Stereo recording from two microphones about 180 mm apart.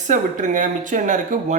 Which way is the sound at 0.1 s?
45° right (ahead or behind).